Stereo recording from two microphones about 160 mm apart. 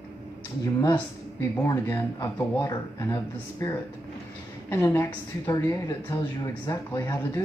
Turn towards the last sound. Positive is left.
turn(degrees=20)  # may be behind; listen again after turning